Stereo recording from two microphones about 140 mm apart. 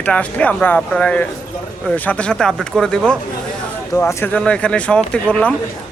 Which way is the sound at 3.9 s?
15° left (ahead or behind).